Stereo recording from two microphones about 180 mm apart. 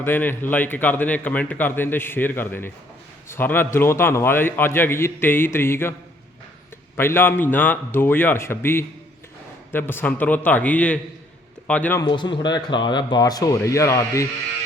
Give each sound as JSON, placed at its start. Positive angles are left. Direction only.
{"t": 0.0, "sound": "a man's voice", "side_deg": 10}
{"t": 6.9, "sound": "a man's voice", "side_deg": 15}
{"t": 12.0, "sound": "speech", "side_deg": 25}